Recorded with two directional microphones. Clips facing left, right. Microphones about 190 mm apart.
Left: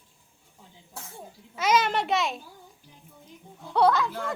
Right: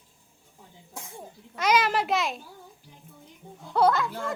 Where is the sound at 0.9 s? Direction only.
15° right (ahead or behind).